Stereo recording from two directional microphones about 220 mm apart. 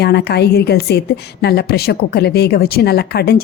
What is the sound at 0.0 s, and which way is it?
A woman's voice, 45° left (ahead or behind).